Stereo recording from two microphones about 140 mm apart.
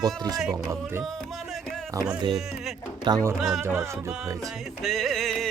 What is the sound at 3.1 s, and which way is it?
Speech, 30° right (ahead or behind).